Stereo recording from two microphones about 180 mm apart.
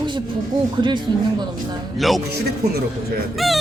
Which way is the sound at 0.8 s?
25° right (ahead or behind).